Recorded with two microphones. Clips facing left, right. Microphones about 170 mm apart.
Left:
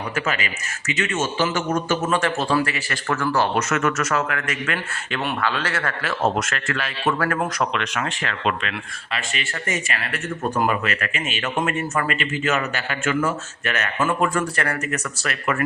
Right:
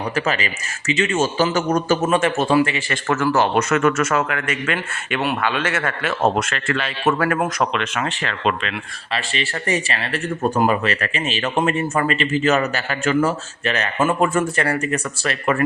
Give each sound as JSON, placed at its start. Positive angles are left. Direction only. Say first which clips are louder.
{"t": 0.3, "sound": "speech", "louder": "right 3 dB", "side_deg": -35}
{"t": 2.0, "sound": "a man's voice", "louder": "right 4 dB", "side_deg": -20}